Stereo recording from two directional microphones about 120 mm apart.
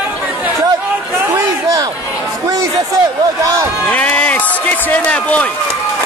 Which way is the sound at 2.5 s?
30° right (ahead or behind).